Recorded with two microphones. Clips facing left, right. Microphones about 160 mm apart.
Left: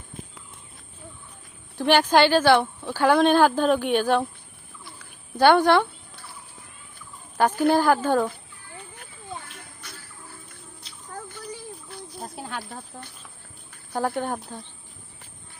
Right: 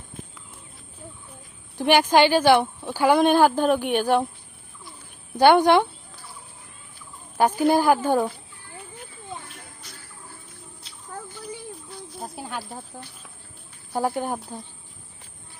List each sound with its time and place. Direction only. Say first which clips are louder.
1.8 s speech: right 1 dB; 15° right (ahead or behind)
5.4 s speech: right 1 dB; 15° right (ahead or behind)
7.3 s a woman's voice: right 1 dB; 10° right (ahead or behind)
12.2 s snake: right 1 dB; centre (ahead or behind)
12.9 s speech: right 1 dB; 5° right (ahead or behind)